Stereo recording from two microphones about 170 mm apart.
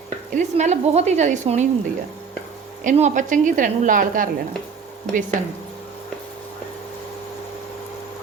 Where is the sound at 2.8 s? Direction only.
45° right (ahead or behind).